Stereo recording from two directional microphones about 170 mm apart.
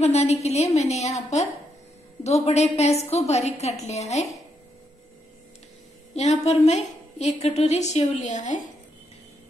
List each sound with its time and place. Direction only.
0.0 s a woman's voice: 40° left (ahead or behind)
6.1 s a woman's voice: 40° left (ahead or behind)